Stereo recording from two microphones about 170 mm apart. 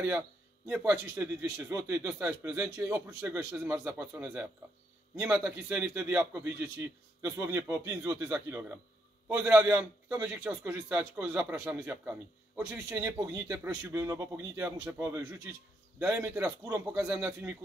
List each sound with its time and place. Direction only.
0.7 s speech: 10° right (ahead or behind)